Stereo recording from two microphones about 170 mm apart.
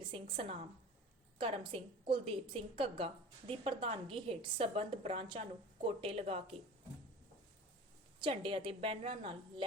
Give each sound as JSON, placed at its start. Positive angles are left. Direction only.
{"t": 0.1, "sound": "a woman's voice", "side_deg": -35}
{"t": 8.2, "sound": "a woman's voice", "side_deg": -30}